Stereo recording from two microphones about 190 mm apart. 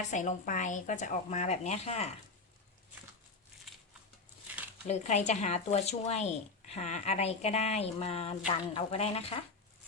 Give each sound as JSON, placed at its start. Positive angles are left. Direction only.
{"t": 0.1, "sound": "a woman's voice", "side_deg": 40}
{"t": 4.9, "sound": "a woman's voice", "side_deg": 35}